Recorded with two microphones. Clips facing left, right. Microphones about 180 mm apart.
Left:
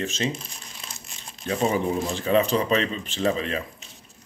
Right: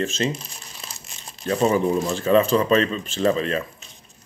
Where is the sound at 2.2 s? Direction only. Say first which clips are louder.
Right 4 dB; 15° left (ahead or behind).